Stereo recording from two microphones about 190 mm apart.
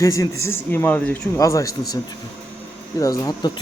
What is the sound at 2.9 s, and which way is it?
Speech, 20° left (ahead or behind).